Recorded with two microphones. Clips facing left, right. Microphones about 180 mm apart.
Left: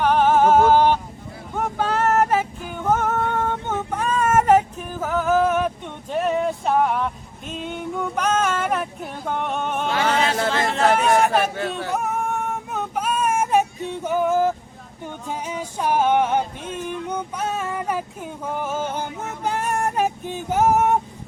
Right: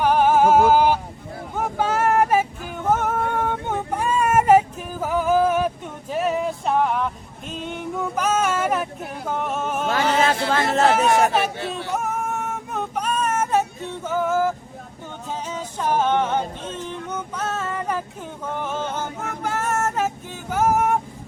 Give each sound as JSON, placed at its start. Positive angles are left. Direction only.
{"t": 0.0, "sound": "music", "side_deg": -10}
{"t": 1.5, "sound": "vehicle", "side_deg": -5}
{"t": 7.5, "sound": "a sound", "side_deg": 0}
{"t": 9.8, "sound": "chant", "side_deg": -45}
{"t": 10.9, "sound": "a sound", "side_deg": 0}
{"t": 11.9, "sound": "female singing", "side_deg": 0}
{"t": 15.3, "sound": "music", "side_deg": 10}
{"t": 18.4, "sound": "male singing", "side_deg": 10}